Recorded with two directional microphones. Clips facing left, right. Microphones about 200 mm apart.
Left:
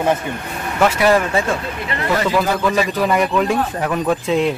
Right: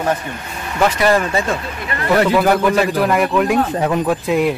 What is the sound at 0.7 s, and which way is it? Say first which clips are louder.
Speech: even; 5° left (ahead or behind).